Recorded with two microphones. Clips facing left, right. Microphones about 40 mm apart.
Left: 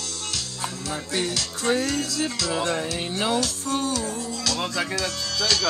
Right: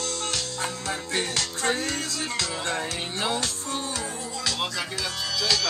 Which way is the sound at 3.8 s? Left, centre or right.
Right.